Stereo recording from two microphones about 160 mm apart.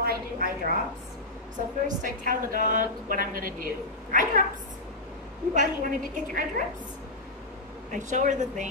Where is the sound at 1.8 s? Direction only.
55° right (ahead or behind).